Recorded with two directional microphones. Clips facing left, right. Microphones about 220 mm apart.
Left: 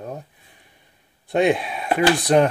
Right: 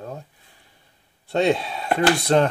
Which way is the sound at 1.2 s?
15° left (ahead or behind).